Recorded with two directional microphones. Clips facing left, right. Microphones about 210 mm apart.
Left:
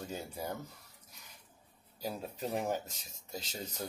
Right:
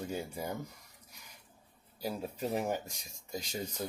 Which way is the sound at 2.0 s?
10° right (ahead or behind).